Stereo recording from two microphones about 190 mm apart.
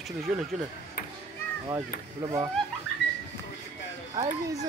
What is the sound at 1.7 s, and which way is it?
Speech, 20° right (ahead or behind).